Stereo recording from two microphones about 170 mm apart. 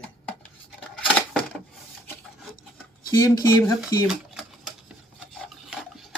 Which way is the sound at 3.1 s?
20° left (ahead or behind).